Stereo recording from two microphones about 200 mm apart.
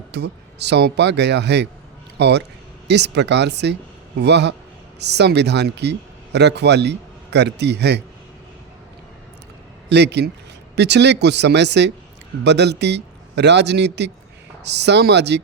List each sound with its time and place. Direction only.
0.1 s a man's voice: 55° right (ahead or behind)
9.9 s speech: 60° right (ahead or behind)